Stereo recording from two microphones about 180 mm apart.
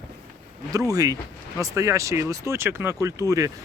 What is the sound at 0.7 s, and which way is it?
Speech, 20° right (ahead or behind).